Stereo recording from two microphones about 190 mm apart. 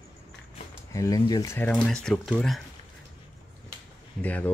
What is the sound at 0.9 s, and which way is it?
Speech, 20° left (ahead or behind).